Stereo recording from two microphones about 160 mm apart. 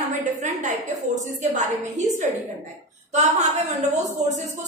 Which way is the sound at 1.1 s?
50° right (ahead or behind).